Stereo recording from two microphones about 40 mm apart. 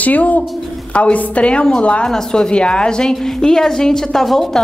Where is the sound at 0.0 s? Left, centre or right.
Left.